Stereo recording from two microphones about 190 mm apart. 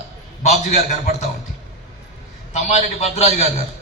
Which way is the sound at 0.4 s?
35° left (ahead or behind).